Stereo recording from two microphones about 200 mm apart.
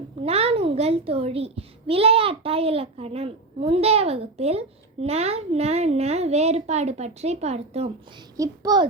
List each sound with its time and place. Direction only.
0.3 s a child's voice: 30° right (ahead or behind)
8.4 s a child's voice: 20° right (ahead or behind)